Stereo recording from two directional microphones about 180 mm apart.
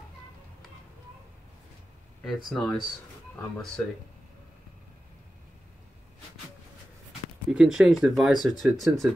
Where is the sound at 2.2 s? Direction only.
Centre (ahead or behind).